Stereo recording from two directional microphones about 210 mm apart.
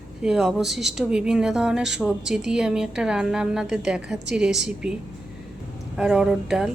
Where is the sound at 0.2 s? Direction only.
5° right (ahead or behind).